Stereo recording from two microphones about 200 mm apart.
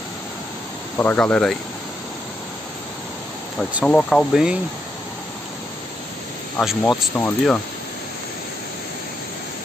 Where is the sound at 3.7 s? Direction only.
5° left (ahead or behind).